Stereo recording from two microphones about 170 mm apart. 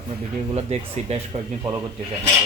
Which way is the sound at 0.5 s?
40° right (ahead or behind).